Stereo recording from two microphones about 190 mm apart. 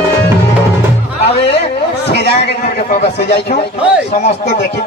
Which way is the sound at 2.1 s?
60° left (ahead or behind).